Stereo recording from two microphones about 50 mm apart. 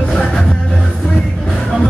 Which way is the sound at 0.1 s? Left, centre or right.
Centre.